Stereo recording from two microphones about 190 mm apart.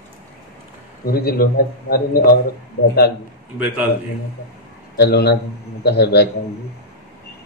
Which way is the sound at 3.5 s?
10° right (ahead or behind).